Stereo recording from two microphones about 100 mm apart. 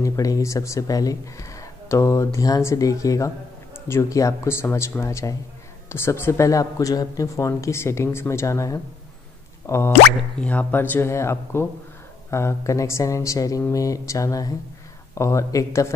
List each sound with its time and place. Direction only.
0.0 s speech: 35° left (ahead or behind)
10.4 s speech: 15° left (ahead or behind); by 15.9 s 30° left (ahead or behind)